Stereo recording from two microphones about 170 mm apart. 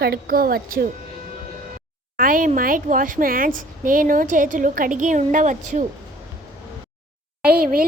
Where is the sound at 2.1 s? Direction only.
55° right (ahead or behind).